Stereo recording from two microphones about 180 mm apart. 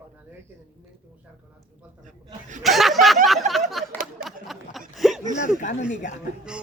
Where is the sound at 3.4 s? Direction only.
40° right (ahead or behind).